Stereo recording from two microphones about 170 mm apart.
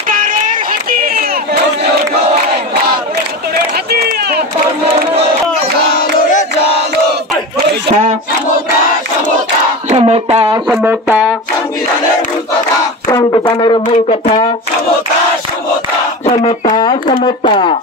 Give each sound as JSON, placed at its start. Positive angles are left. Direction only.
{"t": 0.1, "sound": "a sound", "side_deg": -50}
{"t": 3.9, "sound": "run", "side_deg": -65}
{"t": 9.8, "sound": "speech", "side_deg": -40}
{"t": 10.7, "sound": "music", "side_deg": -10}
{"t": 13.1, "sound": "speech", "side_deg": 25}
{"t": 16.6, "sound": "a sound", "side_deg": 25}
{"t": 16.9, "sound": "speech", "side_deg": 35}